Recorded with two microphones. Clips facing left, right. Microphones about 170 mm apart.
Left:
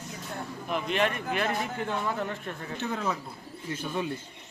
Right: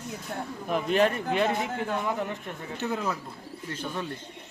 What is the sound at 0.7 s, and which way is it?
Speech, 40° right (ahead or behind).